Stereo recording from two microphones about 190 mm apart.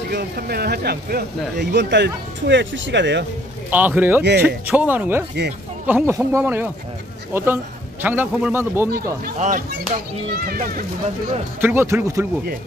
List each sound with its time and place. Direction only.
0.1 s speech: 55° right (ahead or behind)
3.7 s a man's voice: 10° right (ahead or behind)
9.2 s a child's voice: 40° right (ahead or behind)
11.6 s a man's voice: 10° right (ahead or behind)